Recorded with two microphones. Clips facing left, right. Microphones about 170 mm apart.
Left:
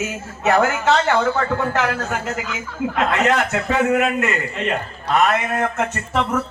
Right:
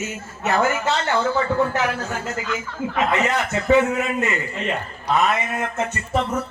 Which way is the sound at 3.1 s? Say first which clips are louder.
Left 4 dB; 75° left (ahead or behind).